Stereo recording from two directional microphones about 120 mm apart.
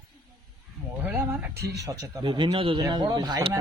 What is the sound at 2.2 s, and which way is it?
Speech, 40° right (ahead or behind).